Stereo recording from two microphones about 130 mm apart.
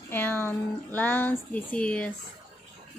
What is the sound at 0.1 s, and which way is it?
Speech, 15° left (ahead or behind).